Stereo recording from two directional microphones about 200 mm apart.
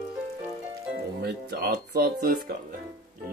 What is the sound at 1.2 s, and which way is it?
Speech, 55° right (ahead or behind).